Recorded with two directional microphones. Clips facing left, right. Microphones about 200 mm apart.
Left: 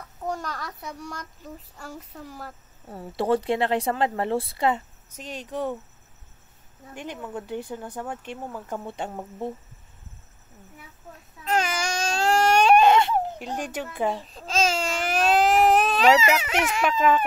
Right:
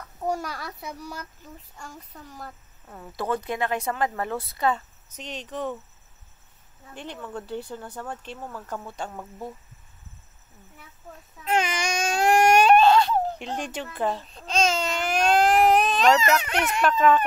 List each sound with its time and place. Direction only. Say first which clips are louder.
0.3 s a child's voice: right 2 dB; 10° right (ahead or behind); by 2.5 s 5° left (ahead or behind)
2.9 s speech: left 5 dB; 30° left (ahead or behind)
5.1 s speech: left 2 dB; 10° left (ahead or behind)
6.9 s speech: left 2 dB; 10° left (ahead or behind)
11.4 s baby cry: even; 15° right (ahead or behind)
12.7 s baby cry: even; 20° left (ahead or behind)
13.4 s speech: left 1 dB; 10° left (ahead or behind)
14.1 s baby cry: even; centre (ahead or behind)